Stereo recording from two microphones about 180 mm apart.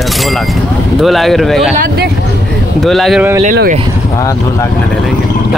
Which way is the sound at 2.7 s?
Centre (ahead or behind).